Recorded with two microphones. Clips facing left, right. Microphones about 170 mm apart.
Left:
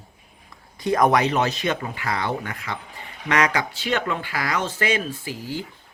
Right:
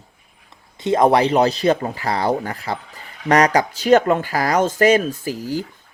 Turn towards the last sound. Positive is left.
turn(degrees=-40)  # may be behind; listen again after turning